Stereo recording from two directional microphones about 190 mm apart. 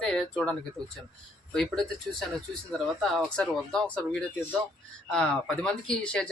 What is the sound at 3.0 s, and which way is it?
Speech, centre (ahead or behind).